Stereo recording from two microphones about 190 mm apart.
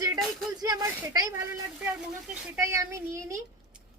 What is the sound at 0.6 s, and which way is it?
Speech, 20° right (ahead or behind).